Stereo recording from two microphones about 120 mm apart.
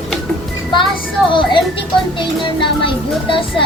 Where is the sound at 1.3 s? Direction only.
45° left (ahead or behind).